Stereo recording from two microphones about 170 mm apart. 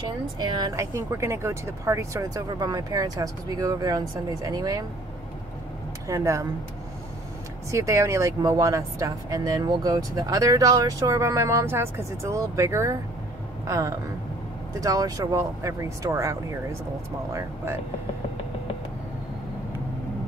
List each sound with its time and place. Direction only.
0.4 s speech: 25° right (ahead or behind)
6.0 s speech: 20° right (ahead or behind)
7.7 s speech: 20° right (ahead or behind)